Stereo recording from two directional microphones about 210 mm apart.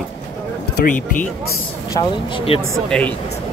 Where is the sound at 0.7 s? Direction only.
40° left (ahead or behind).